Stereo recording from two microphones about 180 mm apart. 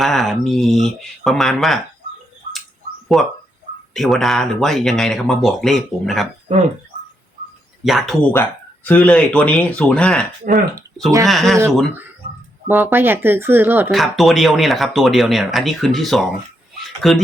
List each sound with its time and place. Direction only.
0.0 s speech: centre (ahead or behind)
3.1 s speech: centre (ahead or behind)
7.9 s speech: centre (ahead or behind)
8.3 s speech: 10° left (ahead or behind)
10.5 s speech: 45° right (ahead or behind)
11.3 s speech: centre (ahead or behind)
12.6 s speech: 10° right (ahead or behind)
13.9 s speech: centre (ahead or behind)